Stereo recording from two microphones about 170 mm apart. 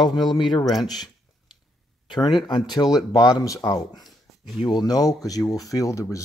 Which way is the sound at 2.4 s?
25° left (ahead or behind).